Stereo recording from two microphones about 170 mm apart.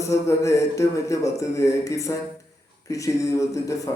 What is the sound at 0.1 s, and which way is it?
A man's voice, 20° left (ahead or behind).